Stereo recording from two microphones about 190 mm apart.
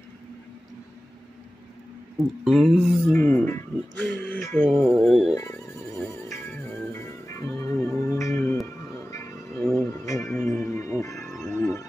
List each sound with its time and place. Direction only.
2.4 s speech: centre (ahead or behind)
3.2 s speech: 10° left (ahead or behind)
5.3 s speech: 15° left (ahead or behind)
6.9 s music: 15° left (ahead or behind)
9.6 s music: centre (ahead or behind)
10.0 s music: 15° left (ahead or behind)
11.4 s wild animals: 15° left (ahead or behind)